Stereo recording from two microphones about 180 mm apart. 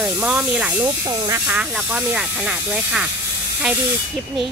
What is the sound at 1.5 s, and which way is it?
Speech, 5° right (ahead or behind).